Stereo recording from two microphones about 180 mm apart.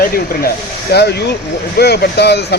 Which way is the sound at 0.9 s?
65° left (ahead or behind).